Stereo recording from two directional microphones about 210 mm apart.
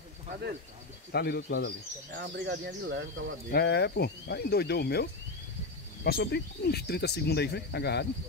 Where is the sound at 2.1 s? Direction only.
55° right (ahead or behind).